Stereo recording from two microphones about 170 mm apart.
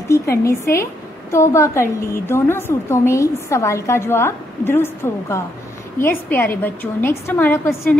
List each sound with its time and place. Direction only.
0.1 s a woman's voice: 15° left (ahead or behind)